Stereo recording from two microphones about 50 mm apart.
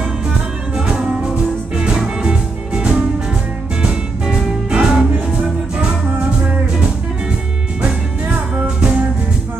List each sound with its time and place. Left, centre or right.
1.8 s music: centre
4.3 s music: centre